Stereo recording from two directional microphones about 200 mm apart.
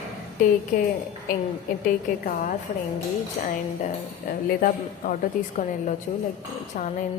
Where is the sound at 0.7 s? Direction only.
45° left (ahead or behind).